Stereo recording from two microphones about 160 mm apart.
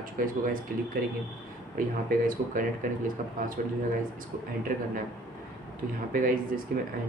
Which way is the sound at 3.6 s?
60° right (ahead or behind).